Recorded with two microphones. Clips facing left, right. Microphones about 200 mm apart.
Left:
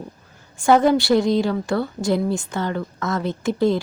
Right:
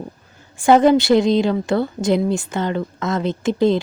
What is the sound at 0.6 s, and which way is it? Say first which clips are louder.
A woman's voice: right 3 dB; 20° right (ahead or behind).